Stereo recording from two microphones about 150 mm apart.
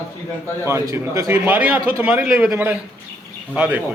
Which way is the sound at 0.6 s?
20° right (ahead or behind).